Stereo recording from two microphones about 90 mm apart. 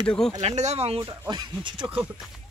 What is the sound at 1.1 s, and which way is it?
Speech, 55° right (ahead or behind).